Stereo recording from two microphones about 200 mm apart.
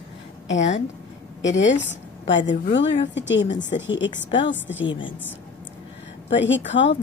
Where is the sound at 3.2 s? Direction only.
65° left (ahead or behind).